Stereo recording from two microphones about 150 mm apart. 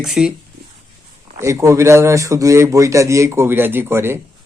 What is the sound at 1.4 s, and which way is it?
A man's voice, 20° right (ahead or behind).